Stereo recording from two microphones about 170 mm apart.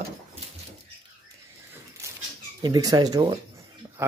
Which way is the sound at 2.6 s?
20° right (ahead or behind).